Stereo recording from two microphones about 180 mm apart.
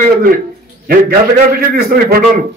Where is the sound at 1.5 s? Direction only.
55° right (ahead or behind).